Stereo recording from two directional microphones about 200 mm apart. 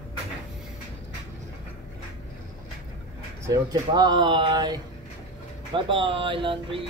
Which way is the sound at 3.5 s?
20° right (ahead or behind).